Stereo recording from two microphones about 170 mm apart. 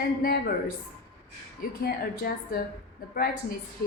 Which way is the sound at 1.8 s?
60° left (ahead or behind).